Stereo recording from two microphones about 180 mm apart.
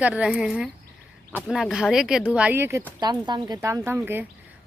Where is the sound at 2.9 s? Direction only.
25° right (ahead or behind).